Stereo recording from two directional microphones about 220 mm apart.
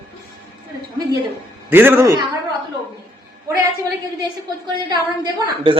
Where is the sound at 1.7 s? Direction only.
10° right (ahead or behind).